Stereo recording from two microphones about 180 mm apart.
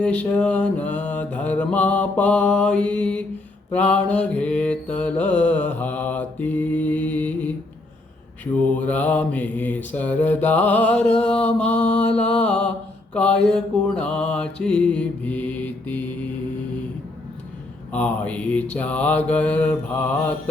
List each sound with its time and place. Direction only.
0.0 s mantra: 5° left (ahead or behind)
8.6 s mantra: 10° left (ahead or behind)
17.9 s mantra: 10° left (ahead or behind)